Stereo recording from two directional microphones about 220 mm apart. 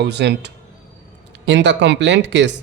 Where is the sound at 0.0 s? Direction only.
50° right (ahead or behind).